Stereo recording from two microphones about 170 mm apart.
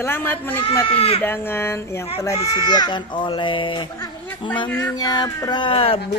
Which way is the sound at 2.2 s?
25° left (ahead or behind).